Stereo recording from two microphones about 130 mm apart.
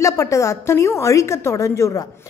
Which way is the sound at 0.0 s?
25° left (ahead or behind).